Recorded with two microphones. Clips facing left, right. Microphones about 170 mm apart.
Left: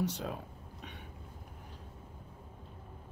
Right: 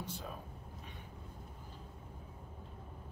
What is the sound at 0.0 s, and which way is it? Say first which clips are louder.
Speech: left 9 dB; 80° left.